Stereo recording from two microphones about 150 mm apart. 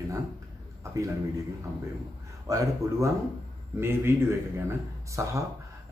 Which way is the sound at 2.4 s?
20° right (ahead or behind).